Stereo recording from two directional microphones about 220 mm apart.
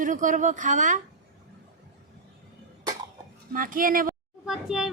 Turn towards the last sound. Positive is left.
turn(degrees=0)  # may be behind; listen again after turning